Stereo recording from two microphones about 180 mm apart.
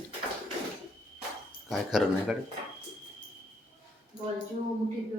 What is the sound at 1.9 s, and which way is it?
Speech, centre (ahead or behind).